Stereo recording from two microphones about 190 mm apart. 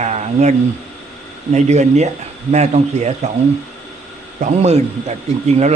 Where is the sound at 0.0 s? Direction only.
35° right (ahead or behind).